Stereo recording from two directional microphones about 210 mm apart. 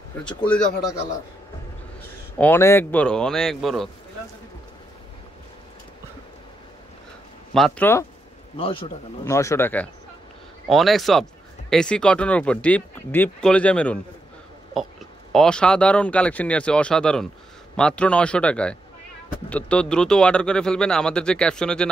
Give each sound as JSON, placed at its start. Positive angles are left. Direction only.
{"t": 0.1, "sound": "speech", "side_deg": 10}
{"t": 2.3, "sound": "speech", "side_deg": 10}
{"t": 7.5, "sound": "speech", "side_deg": 5}
{"t": 8.5, "sound": "a man's voice", "side_deg": 25}
{"t": 9.2, "sound": "speech", "side_deg": 15}
{"t": 15.3, "sound": "speech", "side_deg": 5}